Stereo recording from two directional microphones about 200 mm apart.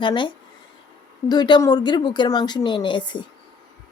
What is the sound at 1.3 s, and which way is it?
Speech, 20° left (ahead or behind).